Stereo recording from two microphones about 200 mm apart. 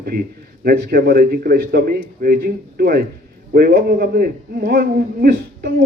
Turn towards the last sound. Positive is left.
turn(degrees=-50)  # may be behind; listen again after turning